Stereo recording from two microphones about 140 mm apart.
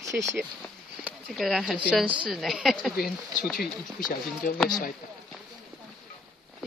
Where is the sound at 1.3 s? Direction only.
Centre (ahead or behind).